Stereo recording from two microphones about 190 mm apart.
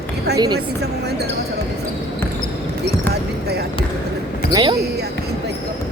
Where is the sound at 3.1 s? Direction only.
60° right (ahead or behind).